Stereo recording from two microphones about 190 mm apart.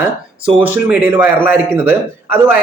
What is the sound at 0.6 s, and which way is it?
A man's voice, 10° right (ahead or behind).